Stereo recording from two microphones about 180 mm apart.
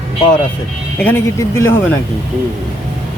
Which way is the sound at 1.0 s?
10° left (ahead or behind).